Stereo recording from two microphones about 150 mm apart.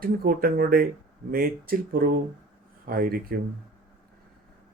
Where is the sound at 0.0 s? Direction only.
75° right (ahead or behind).